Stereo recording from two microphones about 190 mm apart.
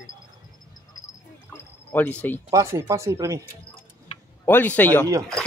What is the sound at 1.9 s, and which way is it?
Speech, 10° left (ahead or behind).